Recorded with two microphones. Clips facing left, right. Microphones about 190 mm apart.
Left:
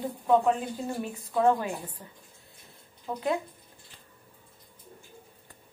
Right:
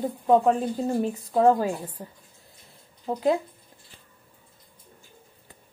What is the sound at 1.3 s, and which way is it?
Speech, 35° right (ahead or behind).